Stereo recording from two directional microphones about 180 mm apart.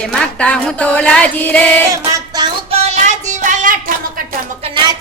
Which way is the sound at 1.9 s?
25° right (ahead or behind).